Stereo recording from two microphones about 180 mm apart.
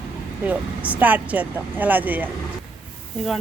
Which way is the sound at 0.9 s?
10° right (ahead or behind).